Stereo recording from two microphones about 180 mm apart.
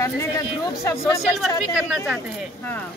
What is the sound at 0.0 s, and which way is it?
Speech, 15° left (ahead or behind).